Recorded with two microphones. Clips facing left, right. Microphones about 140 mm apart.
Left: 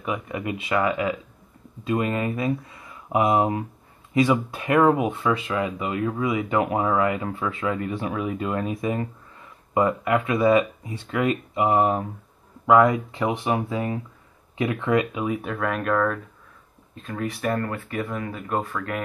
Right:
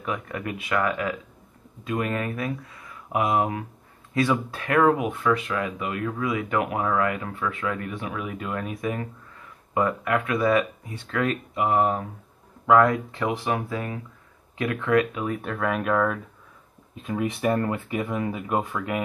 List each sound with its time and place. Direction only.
0.0 s speech: 10° left (ahead or behind)
0.6 s speech: 25° left (ahead or behind)
5.0 s speech: 25° left (ahead or behind)
5.5 s speech: 10° left (ahead or behind)
5.8 s speech: 20° left (ahead or behind); by 17.6 s centre (ahead or behind)
17.6 s speech: 15° right (ahead or behind)